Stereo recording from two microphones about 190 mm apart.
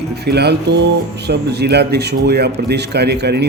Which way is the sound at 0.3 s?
60° right (ahead or behind).